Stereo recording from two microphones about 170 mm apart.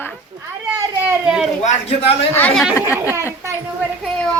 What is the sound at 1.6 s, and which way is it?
Speech, 45° left (ahead or behind).